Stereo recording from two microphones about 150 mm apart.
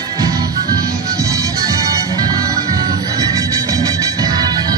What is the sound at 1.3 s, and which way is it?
Music, 20° right (ahead or behind).